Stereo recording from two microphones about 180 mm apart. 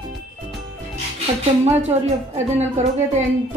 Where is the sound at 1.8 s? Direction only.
40° right (ahead or behind).